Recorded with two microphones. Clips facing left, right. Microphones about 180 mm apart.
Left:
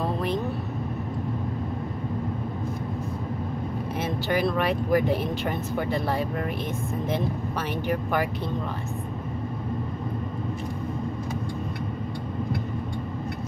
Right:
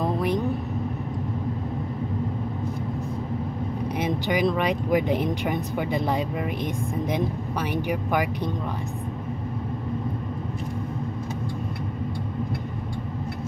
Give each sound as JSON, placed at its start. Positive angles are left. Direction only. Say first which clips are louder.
{"t": 0.0, "sound": "vehicle", "louder": "right 2 dB", "side_deg": -15}
{"t": 4.0, "sound": "speech", "louder": "right 2 dB", "side_deg": -15}
{"t": 7.7, "sound": "speech", "louder": "right 1 dB", "side_deg": -15}